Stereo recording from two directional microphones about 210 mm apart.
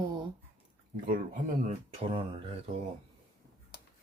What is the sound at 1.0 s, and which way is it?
Speech, 40° right (ahead or behind).